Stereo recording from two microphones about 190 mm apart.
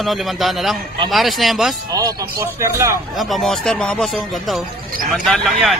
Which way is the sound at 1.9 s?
20° right (ahead or behind).